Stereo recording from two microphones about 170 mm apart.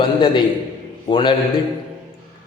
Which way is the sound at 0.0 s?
30° left (ahead or behind).